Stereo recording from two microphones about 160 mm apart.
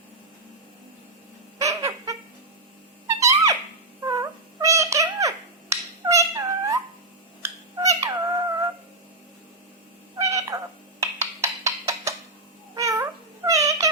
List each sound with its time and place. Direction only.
1.5 s a sound: 20° right (ahead or behind)
3.2 s a sound: 20° right (ahead or behind)
4.0 s cat: 20° right (ahead or behind)
7.8 s cat: 20° right (ahead or behind)
10.2 s cat: 20° right (ahead or behind)
11.0 s wood block: 20° right (ahead or behind)
12.7 s cat: 20° right (ahead or behind)